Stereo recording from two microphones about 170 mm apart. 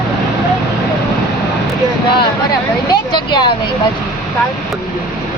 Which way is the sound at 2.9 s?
25° left (ahead or behind).